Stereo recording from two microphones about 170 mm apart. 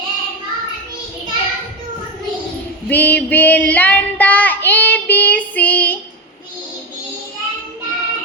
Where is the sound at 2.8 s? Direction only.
10° left (ahead or behind).